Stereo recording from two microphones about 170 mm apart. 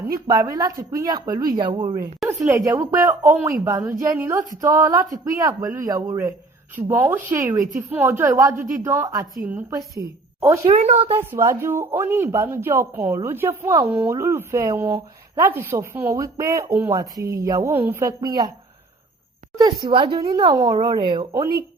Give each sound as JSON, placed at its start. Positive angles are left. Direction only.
{"t": 0.3, "sound": "speech", "side_deg": -20}
{"t": 10.7, "sound": "speech", "side_deg": -40}
{"t": 11.1, "sound": "speech", "side_deg": -15}
{"t": 19.5, "sound": "speech", "side_deg": -20}